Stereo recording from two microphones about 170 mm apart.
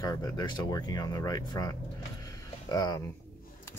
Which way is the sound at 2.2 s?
20° left (ahead or behind).